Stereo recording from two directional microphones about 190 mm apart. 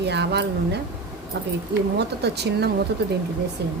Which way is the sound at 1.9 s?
60° right (ahead or behind).